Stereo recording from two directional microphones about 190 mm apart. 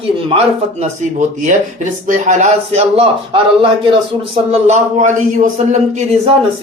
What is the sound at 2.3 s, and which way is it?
Speech, 40° right (ahead or behind).